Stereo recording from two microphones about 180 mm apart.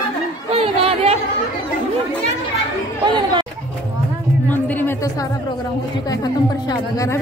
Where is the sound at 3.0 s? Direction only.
25° right (ahead or behind).